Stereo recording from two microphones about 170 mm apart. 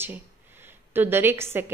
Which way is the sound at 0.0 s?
10° right (ahead or behind).